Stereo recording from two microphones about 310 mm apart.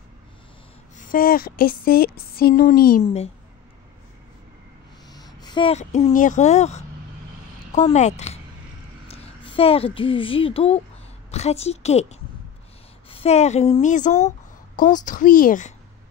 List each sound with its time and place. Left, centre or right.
0.9 s speech: left
5.1 s a woman's voice: centre